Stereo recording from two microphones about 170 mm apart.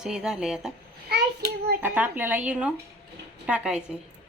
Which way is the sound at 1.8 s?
10° right (ahead or behind).